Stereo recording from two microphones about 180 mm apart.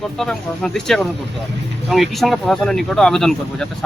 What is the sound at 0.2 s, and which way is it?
A woman's voice, centre (ahead or behind).